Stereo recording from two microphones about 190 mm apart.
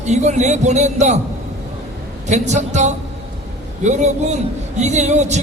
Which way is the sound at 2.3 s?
40° right (ahead or behind).